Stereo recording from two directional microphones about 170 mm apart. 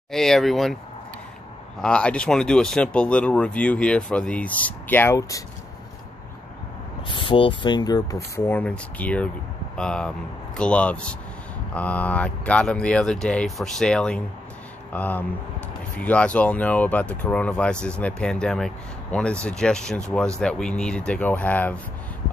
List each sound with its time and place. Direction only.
0.1 s speech: centre (ahead or behind)
1.8 s speech: 5° left (ahead or behind)
7.1 s speech: 30° left (ahead or behind)
8.4 s speech: 10° left (ahead or behind)